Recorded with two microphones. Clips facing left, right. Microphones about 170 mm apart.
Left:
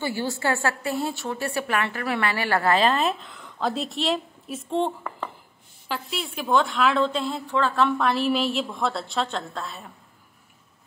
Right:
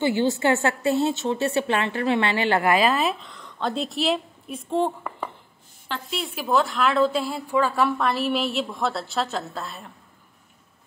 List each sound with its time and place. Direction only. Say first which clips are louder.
0.0 s a woman's voice: right 5 dB; 20° right (ahead or behind); by 9.8 s centre (ahead or behind)